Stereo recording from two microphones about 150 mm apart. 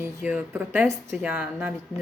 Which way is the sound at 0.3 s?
10° right (ahead or behind).